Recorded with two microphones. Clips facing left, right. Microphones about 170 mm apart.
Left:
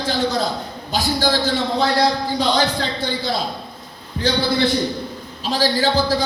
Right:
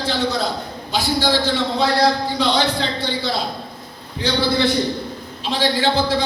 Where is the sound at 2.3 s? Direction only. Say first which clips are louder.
Even; 45° left (ahead or behind).